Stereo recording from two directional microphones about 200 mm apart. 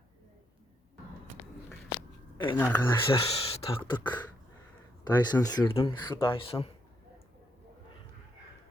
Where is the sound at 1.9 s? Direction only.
20° left (ahead or behind).